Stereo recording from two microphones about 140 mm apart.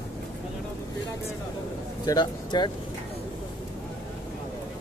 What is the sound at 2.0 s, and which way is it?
Speech, 30° left (ahead or behind).